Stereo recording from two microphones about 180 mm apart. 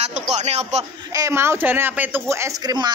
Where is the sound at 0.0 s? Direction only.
40° right (ahead or behind).